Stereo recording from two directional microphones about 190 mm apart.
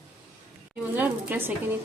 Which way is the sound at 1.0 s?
10° right (ahead or behind).